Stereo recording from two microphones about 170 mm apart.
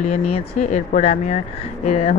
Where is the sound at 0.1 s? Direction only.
40° left (ahead or behind).